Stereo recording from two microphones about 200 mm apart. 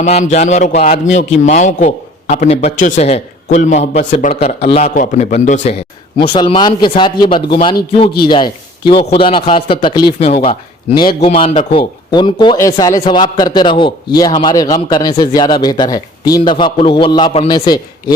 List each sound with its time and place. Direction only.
0.0 s a man's voice: 35° left (ahead or behind)
6.1 s a man's voice: 25° left (ahead or behind)